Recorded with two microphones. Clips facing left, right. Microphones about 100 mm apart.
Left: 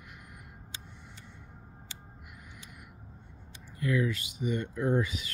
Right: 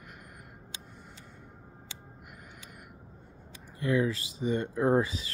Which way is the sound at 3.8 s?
30° right (ahead or behind).